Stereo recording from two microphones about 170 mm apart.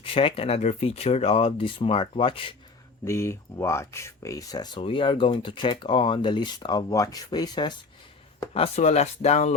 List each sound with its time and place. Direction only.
0.0 s speech: 30° left (ahead or behind)
3.0 s speech: 15° left (ahead or behind)
8.5 s speech: 35° left (ahead or behind)